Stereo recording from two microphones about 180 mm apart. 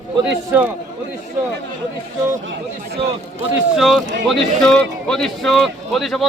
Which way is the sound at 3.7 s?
Centre (ahead or behind).